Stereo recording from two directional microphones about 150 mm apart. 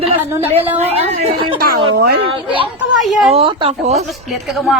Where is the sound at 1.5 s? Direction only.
85° right.